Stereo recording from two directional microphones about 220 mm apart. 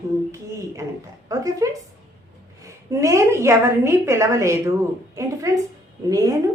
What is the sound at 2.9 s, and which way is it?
A woman's voice, 15° right (ahead or behind).